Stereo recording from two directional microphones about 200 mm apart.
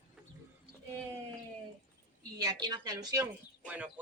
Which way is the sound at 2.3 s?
20° right (ahead or behind).